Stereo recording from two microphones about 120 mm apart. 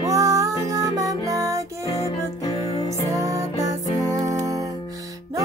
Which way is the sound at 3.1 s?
30° right (ahead or behind).